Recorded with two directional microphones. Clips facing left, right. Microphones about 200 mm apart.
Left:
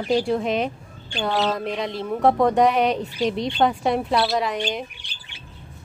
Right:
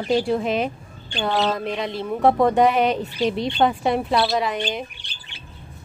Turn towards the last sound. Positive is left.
turn(degrees=5)  # may be behind; listen again after turning